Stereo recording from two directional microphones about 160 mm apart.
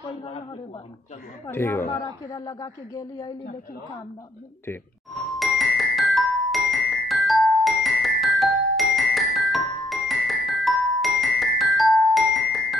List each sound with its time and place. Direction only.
1.5 s a man's voice: 15° left (ahead or behind)
5.1 s glockenspiel: centre (ahead or behind)